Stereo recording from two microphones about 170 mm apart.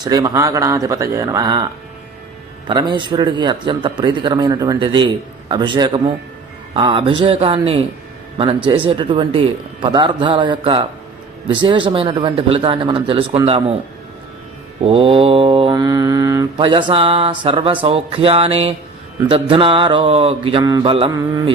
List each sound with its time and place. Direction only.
0.0 s speech: 25° right (ahead or behind)
2.6 s speech: 25° right (ahead or behind)
6.7 s mantra: 30° right (ahead or behind)
8.4 s speech: 30° right (ahead or behind)
11.4 s mantra: 30° right (ahead or behind)
14.8 s mantra: 35° right (ahead or behind)
21.1 s speech: 20° right (ahead or behind)